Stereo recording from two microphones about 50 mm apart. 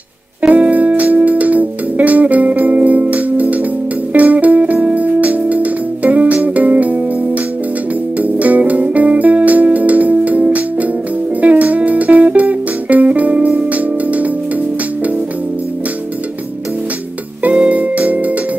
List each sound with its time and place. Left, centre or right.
0.4 s music: right
8.2 s music: right
17.4 s music: right